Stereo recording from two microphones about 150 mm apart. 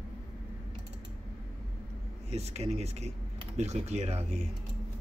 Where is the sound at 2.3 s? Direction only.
45° right (ahead or behind).